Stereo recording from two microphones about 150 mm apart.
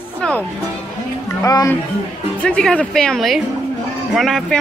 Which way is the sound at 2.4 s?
5° left (ahead or behind).